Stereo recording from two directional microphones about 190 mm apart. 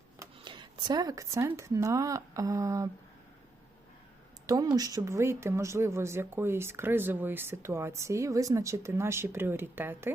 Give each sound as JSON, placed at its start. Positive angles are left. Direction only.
{"t": 0.2, "sound": "speech", "side_deg": -25}
{"t": 4.4, "sound": "speech", "side_deg": -20}